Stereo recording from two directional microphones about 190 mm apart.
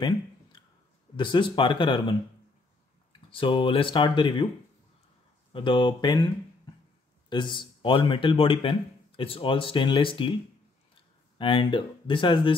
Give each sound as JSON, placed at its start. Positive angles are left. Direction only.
{"t": 1.1, "sound": "a man's voice", "side_deg": 25}
{"t": 5.5, "sound": "a man's voice", "side_deg": 25}
{"t": 11.3, "sound": "a man's voice", "side_deg": 25}